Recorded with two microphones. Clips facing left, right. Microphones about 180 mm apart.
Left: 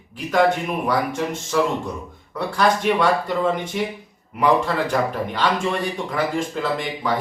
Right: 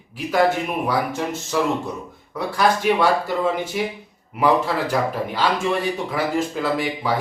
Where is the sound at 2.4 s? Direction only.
5° right (ahead or behind).